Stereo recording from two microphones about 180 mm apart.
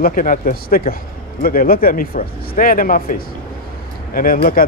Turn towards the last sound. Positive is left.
turn(degrees=50)  # may be behind; listen again after turning